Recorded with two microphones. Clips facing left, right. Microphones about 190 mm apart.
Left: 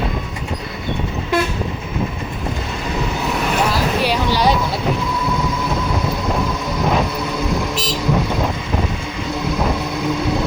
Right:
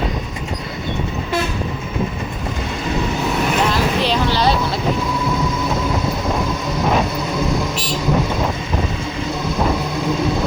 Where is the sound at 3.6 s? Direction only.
10° left (ahead or behind).